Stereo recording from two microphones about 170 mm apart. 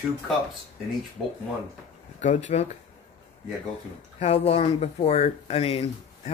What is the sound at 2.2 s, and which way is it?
Speech, 45° left (ahead or behind).